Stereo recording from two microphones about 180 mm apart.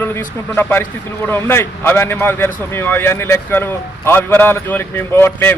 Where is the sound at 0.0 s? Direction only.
10° left (ahead or behind).